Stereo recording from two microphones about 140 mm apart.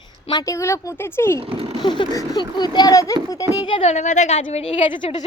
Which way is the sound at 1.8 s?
30° left (ahead or behind).